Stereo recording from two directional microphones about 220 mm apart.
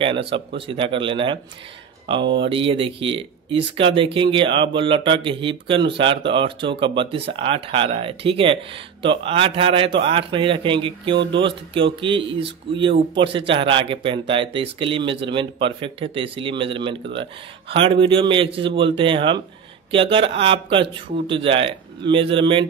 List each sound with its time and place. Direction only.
0.6 s speech: 25° right (ahead or behind)
2.4 s speech: 25° right (ahead or behind)